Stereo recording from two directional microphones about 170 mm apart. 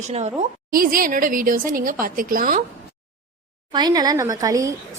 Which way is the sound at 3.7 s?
25° right (ahead or behind).